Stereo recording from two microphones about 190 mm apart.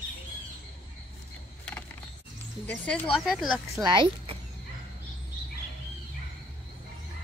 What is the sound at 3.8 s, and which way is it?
Speech, 25° right (ahead or behind).